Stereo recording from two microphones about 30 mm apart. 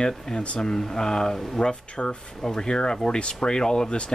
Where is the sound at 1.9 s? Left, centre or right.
Left.